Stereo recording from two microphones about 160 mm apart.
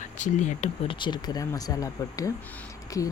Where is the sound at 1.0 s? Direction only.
25° left (ahead or behind).